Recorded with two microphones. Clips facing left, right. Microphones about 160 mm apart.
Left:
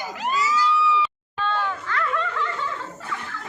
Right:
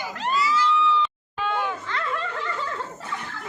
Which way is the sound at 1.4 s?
15° right (ahead or behind).